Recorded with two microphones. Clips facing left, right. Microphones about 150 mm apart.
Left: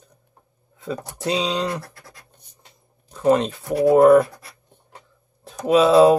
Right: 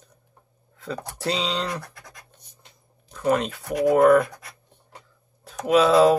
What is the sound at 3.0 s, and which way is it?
Speech, 20° left (ahead or behind).